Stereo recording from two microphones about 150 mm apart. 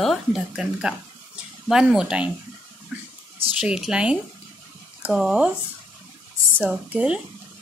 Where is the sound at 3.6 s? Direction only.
5° right (ahead or behind).